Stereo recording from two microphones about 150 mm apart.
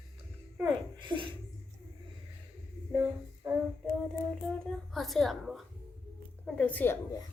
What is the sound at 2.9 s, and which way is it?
Music, 15° right (ahead or behind).